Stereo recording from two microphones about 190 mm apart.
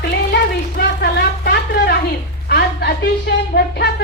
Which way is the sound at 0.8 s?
55° left (ahead or behind).